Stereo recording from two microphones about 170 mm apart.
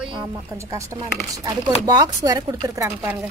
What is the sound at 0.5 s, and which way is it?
Speech, 20° right (ahead or behind).